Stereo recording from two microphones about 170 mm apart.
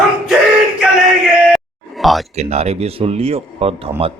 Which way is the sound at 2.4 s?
40° right (ahead or behind).